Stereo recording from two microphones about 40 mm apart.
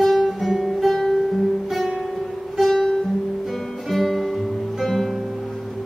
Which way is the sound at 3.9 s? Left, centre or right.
Centre.